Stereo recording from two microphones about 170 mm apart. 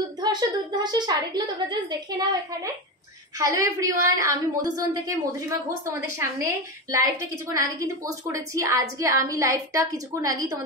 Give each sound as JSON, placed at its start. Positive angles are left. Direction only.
{"t": 0.2, "sound": "a woman's voice", "side_deg": -25}